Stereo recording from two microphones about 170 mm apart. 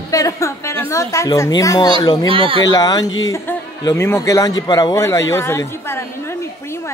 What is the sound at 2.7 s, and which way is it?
Speech, 20° left (ahead or behind).